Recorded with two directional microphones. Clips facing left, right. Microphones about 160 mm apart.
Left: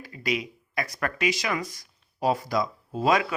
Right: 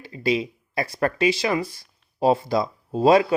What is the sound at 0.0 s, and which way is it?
Speech, 30° right (ahead or behind).